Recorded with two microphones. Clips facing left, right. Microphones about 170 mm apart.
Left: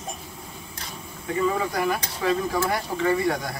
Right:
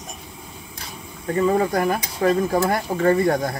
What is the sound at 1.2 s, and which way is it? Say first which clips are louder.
Speech: right 5 dB; 45° right (ahead or behind).